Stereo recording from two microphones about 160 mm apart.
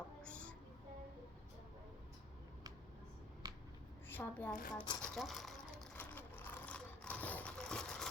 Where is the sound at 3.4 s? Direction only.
25° right (ahead or behind).